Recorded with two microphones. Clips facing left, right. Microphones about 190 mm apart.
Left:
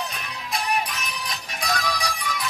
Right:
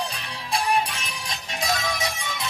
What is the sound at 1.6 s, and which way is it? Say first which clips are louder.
Music: right 1 dB; 25° right (ahead or behind).